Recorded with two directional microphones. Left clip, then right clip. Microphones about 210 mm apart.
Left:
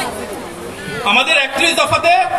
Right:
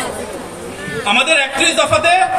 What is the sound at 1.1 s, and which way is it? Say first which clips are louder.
A man's voice: even; 20° right (ahead or behind).